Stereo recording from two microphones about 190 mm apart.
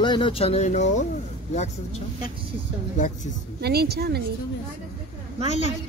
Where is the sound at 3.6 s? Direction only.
55° right (ahead or behind).